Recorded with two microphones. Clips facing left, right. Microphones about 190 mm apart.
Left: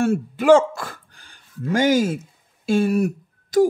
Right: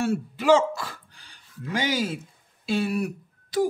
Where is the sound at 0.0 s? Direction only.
50° left (ahead or behind).